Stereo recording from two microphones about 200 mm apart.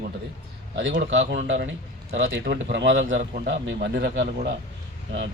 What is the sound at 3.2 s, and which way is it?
Speech, 55° right (ahead or behind).